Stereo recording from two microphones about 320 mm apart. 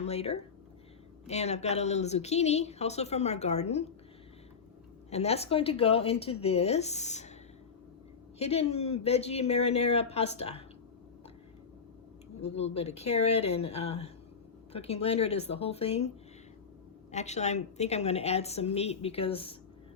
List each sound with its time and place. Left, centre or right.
0.0 s speech: centre
5.1 s speech: centre
8.4 s speech: centre
12.4 s speech: centre
17.1 s speech: left